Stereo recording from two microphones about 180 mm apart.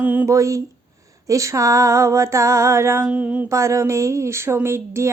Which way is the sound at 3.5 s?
15° right (ahead or behind).